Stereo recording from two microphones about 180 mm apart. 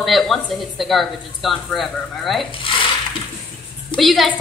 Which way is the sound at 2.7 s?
30° left (ahead or behind).